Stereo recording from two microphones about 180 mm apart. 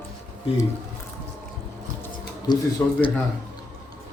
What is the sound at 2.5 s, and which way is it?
Speech, 25° left (ahead or behind).